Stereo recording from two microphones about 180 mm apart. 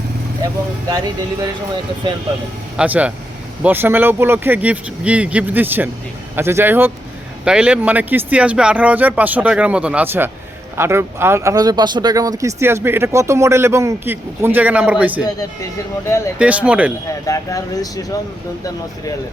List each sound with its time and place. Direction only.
2.7 s speech: 10° right (ahead or behind)
16.0 s speech: 15° left (ahead or behind)
16.4 s speech: 5° right (ahead or behind)
17.1 s speech: 20° left (ahead or behind)